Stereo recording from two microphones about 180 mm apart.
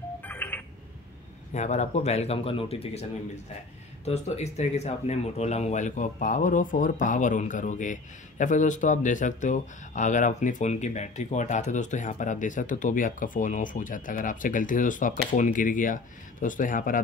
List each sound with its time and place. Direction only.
0.2 s alarm clock: 10° left (ahead or behind)
1.5 s speech: 40° left (ahead or behind)